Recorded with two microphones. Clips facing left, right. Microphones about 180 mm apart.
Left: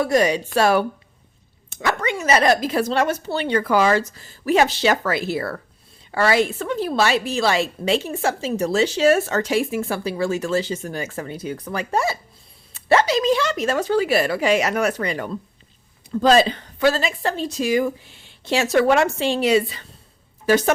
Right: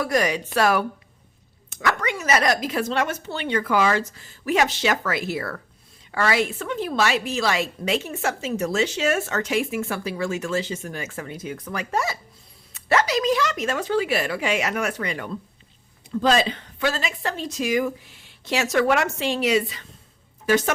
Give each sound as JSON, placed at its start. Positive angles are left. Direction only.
{"t": 0.0, "sound": "a woman's voice", "side_deg": 25}